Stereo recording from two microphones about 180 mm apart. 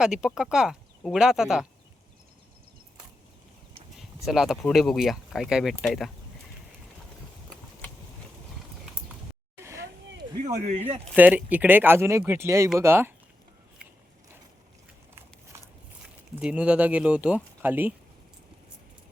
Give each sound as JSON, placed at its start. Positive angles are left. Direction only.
{"t": 0.0, "sound": "speech", "side_deg": -5}
{"t": 3.9, "sound": "a sound", "side_deg": 0}
{"t": 4.7, "sound": "speech", "side_deg": 0}
{"t": 9.6, "sound": "vehicle", "side_deg": -15}
{"t": 10.2, "sound": "speech", "side_deg": -35}
{"t": 11.1, "sound": "speech", "side_deg": -10}
{"t": 16.0, "sound": "speech", "side_deg": -5}